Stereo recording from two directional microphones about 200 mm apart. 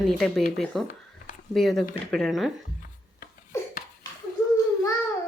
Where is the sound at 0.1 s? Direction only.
Centre (ahead or behind).